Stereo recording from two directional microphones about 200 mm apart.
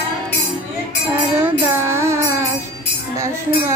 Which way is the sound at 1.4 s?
10° right (ahead or behind).